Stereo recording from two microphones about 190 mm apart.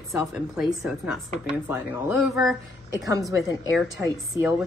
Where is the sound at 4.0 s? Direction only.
10° right (ahead or behind).